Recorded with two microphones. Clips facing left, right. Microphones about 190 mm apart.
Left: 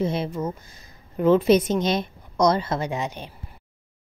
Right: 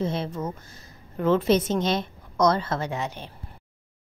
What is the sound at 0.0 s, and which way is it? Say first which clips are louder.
A woman's voice: left 3 dB; 10° left (ahead or behind).